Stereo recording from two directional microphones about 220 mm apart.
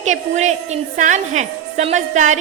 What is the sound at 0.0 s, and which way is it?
A woman's voice, 30° right (ahead or behind).